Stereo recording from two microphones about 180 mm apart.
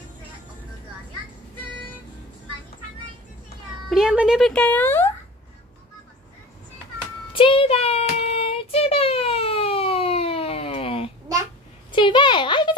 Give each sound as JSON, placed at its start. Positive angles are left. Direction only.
{"t": 3.9, "sound": "speech", "side_deg": -5}
{"t": 7.3, "sound": "child singing", "side_deg": 30}
{"t": 11.9, "sound": "a sound", "side_deg": 25}